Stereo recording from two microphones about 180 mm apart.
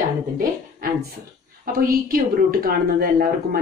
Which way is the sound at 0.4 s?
50° right (ahead or behind).